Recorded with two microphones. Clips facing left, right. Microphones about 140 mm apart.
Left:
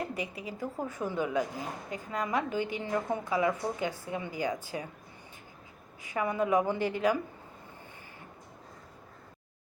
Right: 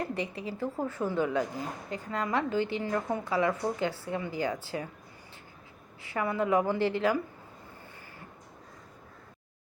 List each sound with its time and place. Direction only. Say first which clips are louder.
0.0 s a woman's voice: right 2 dB; 10° left (ahead or behind)
6.0 s a woman's voice: even; 15° left (ahead or behind)